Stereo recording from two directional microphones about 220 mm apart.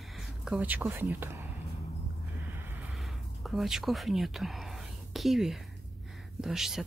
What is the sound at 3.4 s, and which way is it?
Speech, centre (ahead or behind).